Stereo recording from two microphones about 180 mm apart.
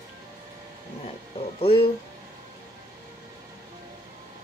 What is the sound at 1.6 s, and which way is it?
Speech, 30° left (ahead or behind).